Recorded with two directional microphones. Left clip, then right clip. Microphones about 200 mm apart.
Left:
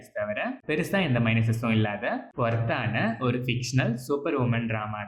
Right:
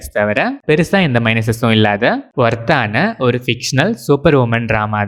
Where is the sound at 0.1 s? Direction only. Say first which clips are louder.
Right 15 dB; 50° right (ahead or behind).